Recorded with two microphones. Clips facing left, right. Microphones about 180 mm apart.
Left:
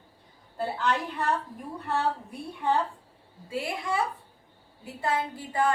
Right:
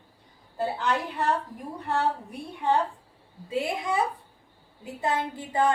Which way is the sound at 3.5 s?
20° right (ahead or behind).